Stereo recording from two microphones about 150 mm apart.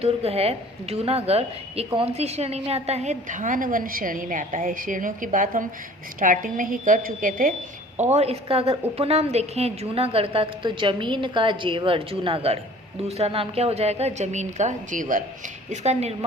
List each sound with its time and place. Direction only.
0.0 s a woman's voice: 40° right (ahead or behind); by 7.5 s 65° right (ahead or behind)
7.9 s a woman's voice: 50° right (ahead or behind)
15.7 s a woman's voice: 50° right (ahead or behind)